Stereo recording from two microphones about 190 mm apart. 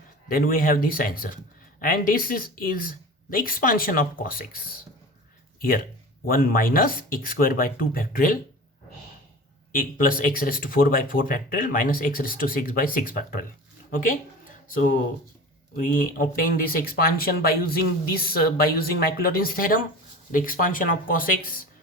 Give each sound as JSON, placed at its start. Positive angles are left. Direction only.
{"t": 0.3, "sound": "speech", "side_deg": 50}
{"t": 9.7, "sound": "speech", "side_deg": 45}
{"t": 14.7, "sound": "speech", "side_deg": 45}